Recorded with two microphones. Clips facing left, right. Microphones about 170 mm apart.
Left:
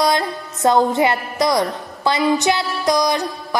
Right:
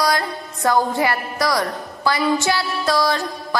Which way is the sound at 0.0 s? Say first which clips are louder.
Left 2 dB; 20° left (ahead or behind).